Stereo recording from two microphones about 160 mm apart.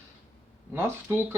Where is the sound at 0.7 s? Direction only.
15° right (ahead or behind).